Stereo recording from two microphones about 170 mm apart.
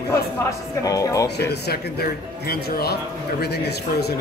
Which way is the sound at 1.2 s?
75° left (ahead or behind).